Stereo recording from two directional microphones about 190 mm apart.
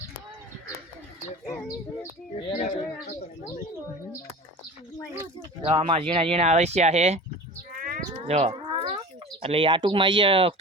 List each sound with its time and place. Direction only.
2.6 s speech: 45° left (ahead or behind)
5.6 s speech: 25° right (ahead or behind)
7.8 s a sound: 50° right (ahead or behind)
8.3 s cat: 35° right (ahead or behind)
9.4 s speech: 30° right (ahead or behind)